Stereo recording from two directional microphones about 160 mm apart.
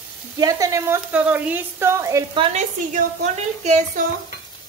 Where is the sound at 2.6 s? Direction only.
45° right (ahead or behind).